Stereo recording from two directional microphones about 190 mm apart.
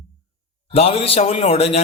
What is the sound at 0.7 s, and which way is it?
A man's voice, 30° left (ahead or behind).